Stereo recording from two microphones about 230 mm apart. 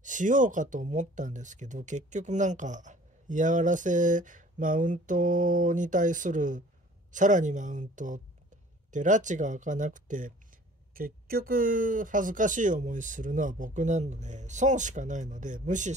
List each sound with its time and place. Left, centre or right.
0.0 s speech: right